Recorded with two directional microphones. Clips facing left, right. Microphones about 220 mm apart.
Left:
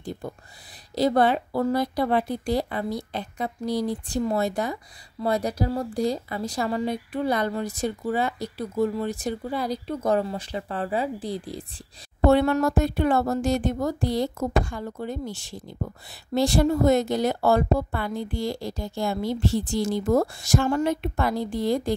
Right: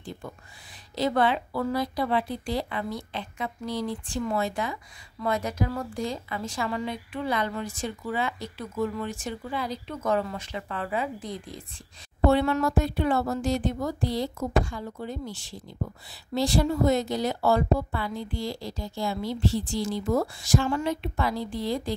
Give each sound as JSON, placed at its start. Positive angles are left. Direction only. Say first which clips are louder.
{"t": 0.9, "sound": "speech", "louder": "left 4 dB", "side_deg": 40}
{"t": 12.3, "sound": "a woman's voice", "louder": "left 3 dB", "side_deg": 45}
{"t": 16.3, "sound": "a woman's voice", "louder": "left 3 dB", "side_deg": 50}